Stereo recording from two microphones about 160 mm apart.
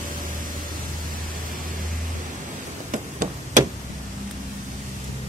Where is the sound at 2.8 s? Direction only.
50° right (ahead or behind).